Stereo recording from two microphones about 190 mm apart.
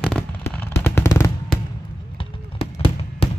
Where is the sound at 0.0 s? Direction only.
5° left (ahead or behind).